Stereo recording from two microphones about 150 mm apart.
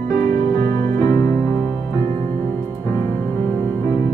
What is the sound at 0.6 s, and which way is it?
Music, 25° left (ahead or behind).